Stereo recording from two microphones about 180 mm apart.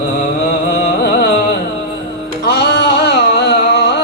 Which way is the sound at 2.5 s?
65° left (ahead or behind).